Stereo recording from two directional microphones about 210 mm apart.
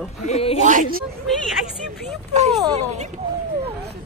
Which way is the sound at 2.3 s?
30° right (ahead or behind).